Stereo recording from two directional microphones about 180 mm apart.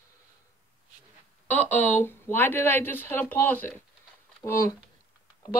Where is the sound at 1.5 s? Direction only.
10° left (ahead or behind).